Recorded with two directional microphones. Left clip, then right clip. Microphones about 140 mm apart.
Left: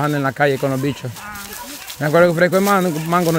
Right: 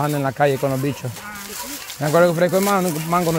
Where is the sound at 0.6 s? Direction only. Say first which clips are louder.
Left 1 dB; 40° left (ahead or behind).